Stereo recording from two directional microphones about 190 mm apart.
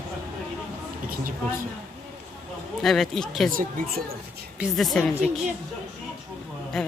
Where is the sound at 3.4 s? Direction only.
50° right (ahead or behind).